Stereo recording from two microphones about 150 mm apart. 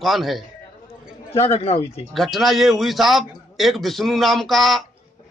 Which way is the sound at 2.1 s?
Centre (ahead or behind).